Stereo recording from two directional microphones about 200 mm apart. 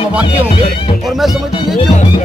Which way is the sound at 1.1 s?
Centre (ahead or behind).